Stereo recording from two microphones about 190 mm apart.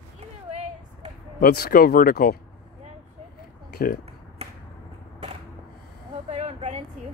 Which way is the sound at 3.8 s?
50° left (ahead or behind).